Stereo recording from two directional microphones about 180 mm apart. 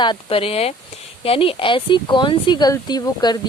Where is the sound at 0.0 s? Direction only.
30° left (ahead or behind).